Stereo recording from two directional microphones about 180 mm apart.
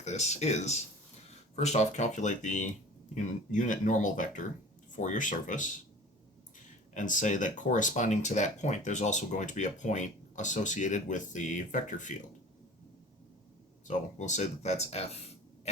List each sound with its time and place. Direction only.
0.0 s speech: 40° left (ahead or behind)
6.9 s speech: 45° left (ahead or behind)
13.8 s speech: 40° left (ahead or behind)